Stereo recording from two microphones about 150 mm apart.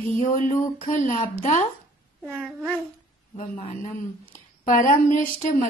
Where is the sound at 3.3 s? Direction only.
55° left (ahead or behind).